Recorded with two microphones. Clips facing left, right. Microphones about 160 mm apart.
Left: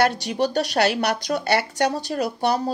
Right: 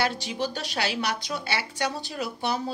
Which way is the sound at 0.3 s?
65° left (ahead or behind).